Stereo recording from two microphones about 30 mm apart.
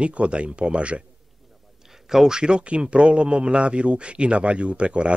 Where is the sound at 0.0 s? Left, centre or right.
Right.